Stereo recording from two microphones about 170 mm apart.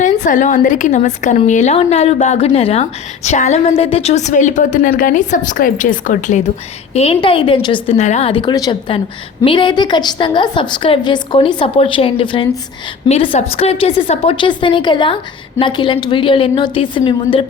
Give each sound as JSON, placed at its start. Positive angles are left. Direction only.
{"t": 0.0, "sound": "a woman's voice", "side_deg": 50}
{"t": 6.9, "sound": "a woman's voice", "side_deg": 35}
{"t": 8.3, "sound": "a woman's voice", "side_deg": 30}